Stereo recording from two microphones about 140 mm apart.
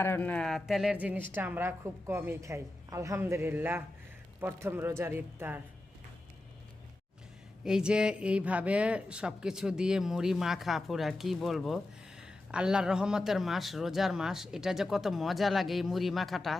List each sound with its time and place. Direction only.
0.0 s a woman's voice: 15° left (ahead or behind); by 5.6 s 15° right (ahead or behind)
7.6 s speech: 5° right (ahead or behind)